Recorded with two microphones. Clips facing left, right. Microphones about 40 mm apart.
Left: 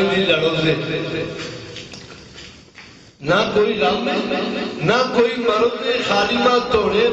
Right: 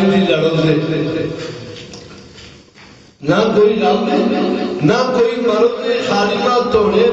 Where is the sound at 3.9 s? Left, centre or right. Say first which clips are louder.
Right 5 dB; centre.